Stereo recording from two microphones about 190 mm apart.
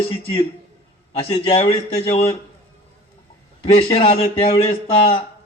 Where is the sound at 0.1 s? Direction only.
30° left (ahead or behind).